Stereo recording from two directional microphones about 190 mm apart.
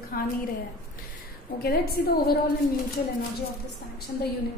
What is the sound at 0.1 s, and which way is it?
Speech, 50° left (ahead or behind).